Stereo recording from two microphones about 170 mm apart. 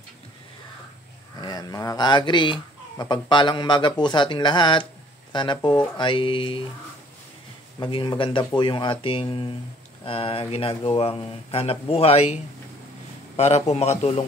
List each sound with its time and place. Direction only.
1.4 s speech: 20° left (ahead or behind)
7.8 s speech: 25° left (ahead or behind)
13.4 s speech: 40° left (ahead or behind)